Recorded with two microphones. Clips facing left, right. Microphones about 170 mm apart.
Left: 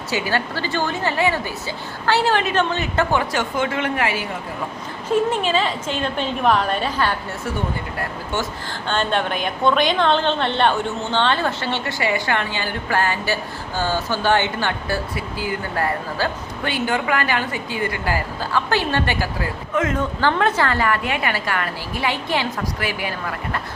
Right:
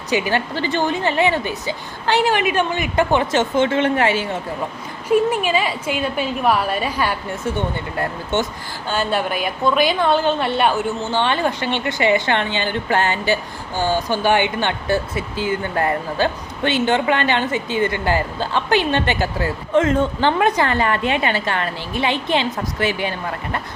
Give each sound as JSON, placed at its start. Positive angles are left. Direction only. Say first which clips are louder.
{"t": 0.1, "sound": "a woman's voice", "louder": "right 3 dB", "side_deg": -20}
{"t": 5.0, "sound": "a woman's voice", "louder": "right 2 dB", "side_deg": -10}
{"t": 7.9, "sound": "a woman's voice", "louder": "right 4 dB", "side_deg": -20}
{"t": 8.9, "sound": "a woman's voice", "louder": "right 1 dB", "side_deg": -5}
{"t": 20.4, "sound": "a woman's voice", "louder": "right 2 dB", "side_deg": -15}